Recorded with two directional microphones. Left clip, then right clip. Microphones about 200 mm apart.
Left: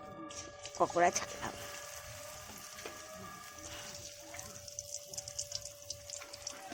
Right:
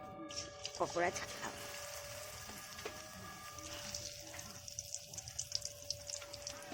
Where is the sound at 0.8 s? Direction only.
25° left (ahead or behind).